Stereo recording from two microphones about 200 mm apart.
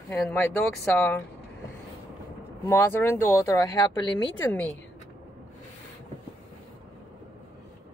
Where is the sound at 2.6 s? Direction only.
15° left (ahead or behind).